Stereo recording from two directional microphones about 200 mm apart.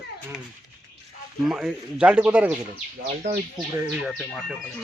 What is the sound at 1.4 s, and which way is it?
A man's voice, 5° right (ahead or behind).